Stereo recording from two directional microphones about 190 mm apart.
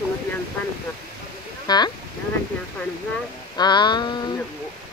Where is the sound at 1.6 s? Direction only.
20° left (ahead or behind).